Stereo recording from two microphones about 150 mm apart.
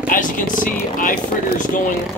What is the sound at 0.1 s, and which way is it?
Speech, 60° left (ahead or behind).